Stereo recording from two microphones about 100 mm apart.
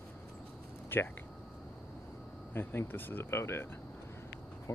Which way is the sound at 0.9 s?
20° left (ahead or behind).